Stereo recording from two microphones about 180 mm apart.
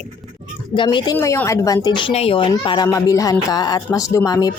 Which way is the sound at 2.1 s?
35° left (ahead or behind).